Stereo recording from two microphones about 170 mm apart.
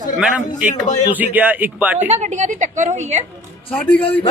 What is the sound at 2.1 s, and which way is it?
A woman's voice, 45° right (ahead or behind).